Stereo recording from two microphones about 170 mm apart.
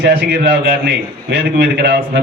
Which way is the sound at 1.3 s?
80° right.